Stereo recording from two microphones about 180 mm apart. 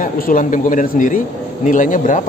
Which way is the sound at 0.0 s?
50° left (ahead or behind).